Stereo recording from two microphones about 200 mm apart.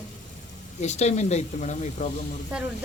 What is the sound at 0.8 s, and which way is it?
Speech, 35° left (ahead or behind).